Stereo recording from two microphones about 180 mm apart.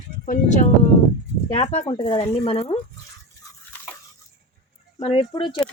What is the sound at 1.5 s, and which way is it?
Speech, 35° left (ahead or behind).